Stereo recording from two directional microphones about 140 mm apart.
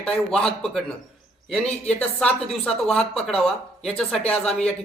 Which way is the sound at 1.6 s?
50° left (ahead or behind).